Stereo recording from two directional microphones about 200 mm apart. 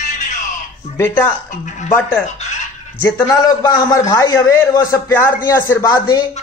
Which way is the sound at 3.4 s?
20° left (ahead or behind).